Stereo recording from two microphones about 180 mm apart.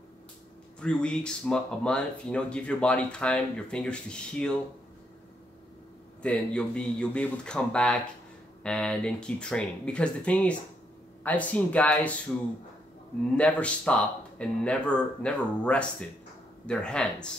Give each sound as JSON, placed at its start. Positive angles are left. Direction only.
{"t": 0.7, "sound": "speech", "side_deg": 5}
{"t": 6.2, "sound": "speech", "side_deg": 5}
{"t": 13.4, "sound": "speech", "side_deg": 5}